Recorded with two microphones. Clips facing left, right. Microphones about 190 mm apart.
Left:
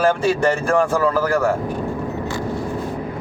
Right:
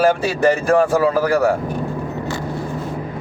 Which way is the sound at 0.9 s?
15° right (ahead or behind).